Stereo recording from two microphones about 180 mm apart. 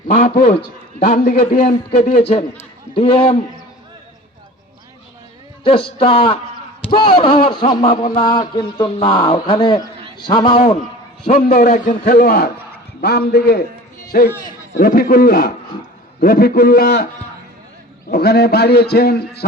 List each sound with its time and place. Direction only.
0.1 s a man's voice: 40° left (ahead or behind)
5.6 s a man's voice: 30° left (ahead or behind)
11.6 s a man's voice: 45° left (ahead or behind); by 17.1 s 60° left (ahead or behind)
18.1 s a man's voice: 65° left (ahead or behind)